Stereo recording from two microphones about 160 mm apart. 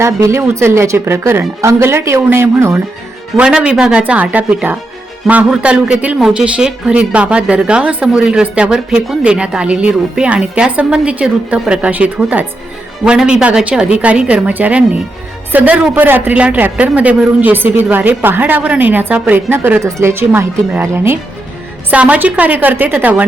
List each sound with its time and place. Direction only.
0.0 s a man's voice: 15° right (ahead or behind)